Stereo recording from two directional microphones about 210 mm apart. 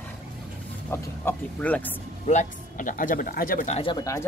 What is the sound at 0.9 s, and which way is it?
Speech, 10° left (ahead or behind).